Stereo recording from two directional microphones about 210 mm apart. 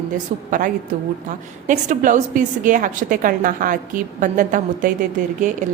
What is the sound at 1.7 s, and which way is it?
A woman's voice, 35° right (ahead or behind).